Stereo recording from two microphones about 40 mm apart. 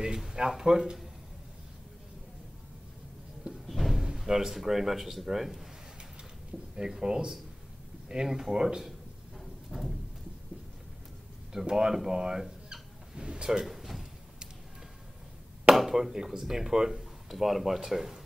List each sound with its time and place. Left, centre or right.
0.0 s speech: centre
3.6 s door: centre
4.2 s speech: centre
6.7 s speech: centre
9.4 s a sound: centre
11.5 s speech: centre
12.7 s a sound: centre
13.7 s drawer open or close: centre
15.7 s speech: centre